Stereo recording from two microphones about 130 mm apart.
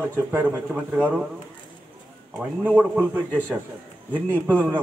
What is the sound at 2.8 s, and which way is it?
Speech, 15° right (ahead or behind).